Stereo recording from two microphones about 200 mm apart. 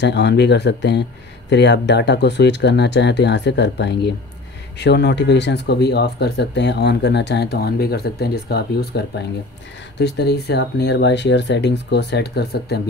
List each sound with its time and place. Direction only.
0.0 s speech: 60° left (ahead or behind)